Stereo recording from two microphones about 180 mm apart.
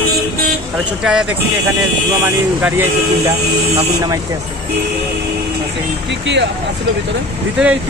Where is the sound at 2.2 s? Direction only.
10° right (ahead or behind).